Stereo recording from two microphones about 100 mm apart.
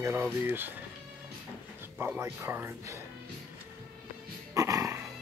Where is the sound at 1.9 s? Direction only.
15° right (ahead or behind).